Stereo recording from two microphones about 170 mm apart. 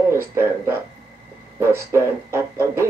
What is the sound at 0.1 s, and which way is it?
Speech, 15° right (ahead or behind).